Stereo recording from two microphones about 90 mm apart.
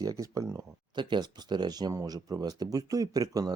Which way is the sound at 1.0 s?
60° right (ahead or behind).